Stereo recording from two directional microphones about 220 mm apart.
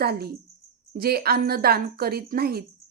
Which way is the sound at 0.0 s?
45° right (ahead or behind).